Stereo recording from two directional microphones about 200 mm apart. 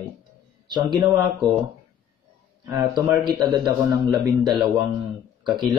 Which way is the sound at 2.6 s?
15° right (ahead or behind).